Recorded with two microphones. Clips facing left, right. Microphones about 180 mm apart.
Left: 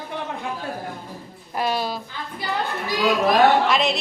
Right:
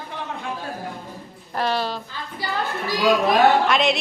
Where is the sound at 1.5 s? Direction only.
10° left (ahead or behind).